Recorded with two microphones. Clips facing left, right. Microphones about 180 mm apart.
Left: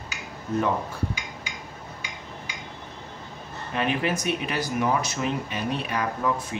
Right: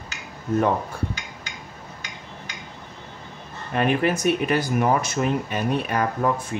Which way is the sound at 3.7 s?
50° right (ahead or behind).